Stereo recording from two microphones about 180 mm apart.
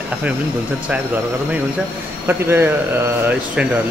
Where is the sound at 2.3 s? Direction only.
15° right (ahead or behind).